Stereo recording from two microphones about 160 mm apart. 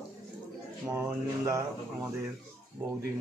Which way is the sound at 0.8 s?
15° right (ahead or behind).